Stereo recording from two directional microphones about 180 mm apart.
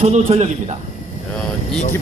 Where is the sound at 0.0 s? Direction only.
35° right (ahead or behind).